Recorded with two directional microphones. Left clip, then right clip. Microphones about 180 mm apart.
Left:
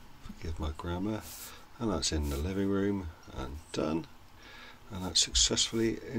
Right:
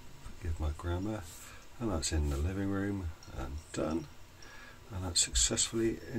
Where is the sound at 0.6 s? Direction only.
20° left (ahead or behind).